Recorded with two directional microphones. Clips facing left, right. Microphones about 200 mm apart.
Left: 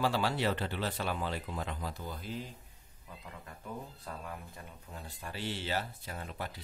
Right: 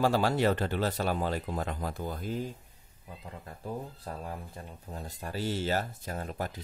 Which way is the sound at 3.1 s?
35° right (ahead or behind).